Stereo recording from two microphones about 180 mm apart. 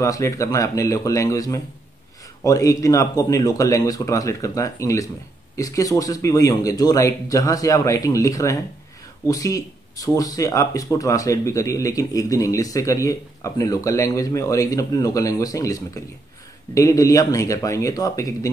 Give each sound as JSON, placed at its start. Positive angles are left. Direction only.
{"t": 0.0, "sound": "speech", "side_deg": 20}